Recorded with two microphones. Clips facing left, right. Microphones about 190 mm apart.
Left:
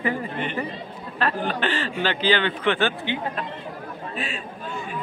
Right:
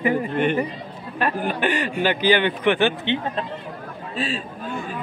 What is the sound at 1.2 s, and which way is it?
A man's voice, 15° right (ahead or behind).